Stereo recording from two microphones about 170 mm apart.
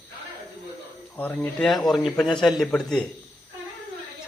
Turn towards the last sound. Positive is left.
turn(degrees=5)  # may be behind; listen again after turning